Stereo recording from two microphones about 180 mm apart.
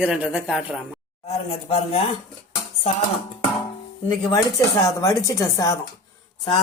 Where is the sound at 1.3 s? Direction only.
30° left (ahead or behind).